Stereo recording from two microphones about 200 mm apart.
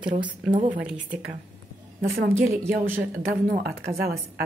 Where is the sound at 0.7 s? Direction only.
5° right (ahead or behind).